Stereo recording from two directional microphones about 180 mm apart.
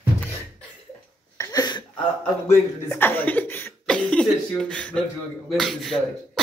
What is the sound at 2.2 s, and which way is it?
Speech, 10° left (ahead or behind).